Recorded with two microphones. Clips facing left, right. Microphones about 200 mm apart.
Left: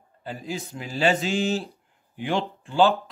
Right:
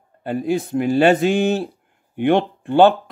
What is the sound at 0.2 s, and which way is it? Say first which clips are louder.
Speech: right 12 dB; 60° right (ahead or behind).